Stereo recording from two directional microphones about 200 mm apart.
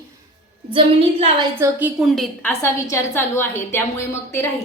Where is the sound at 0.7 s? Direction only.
30° right (ahead or behind).